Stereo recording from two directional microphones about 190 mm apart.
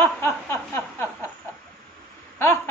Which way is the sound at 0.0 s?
10° left (ahead or behind).